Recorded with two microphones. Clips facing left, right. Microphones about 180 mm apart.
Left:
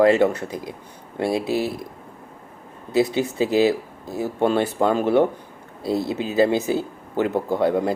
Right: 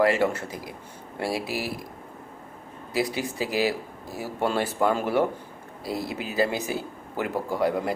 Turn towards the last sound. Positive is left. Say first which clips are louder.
# left 5 dB
turn(degrees=25)  # may be behind; listen again after turning